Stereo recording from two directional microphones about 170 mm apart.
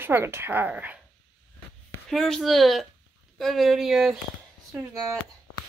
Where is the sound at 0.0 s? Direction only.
15° right (ahead or behind).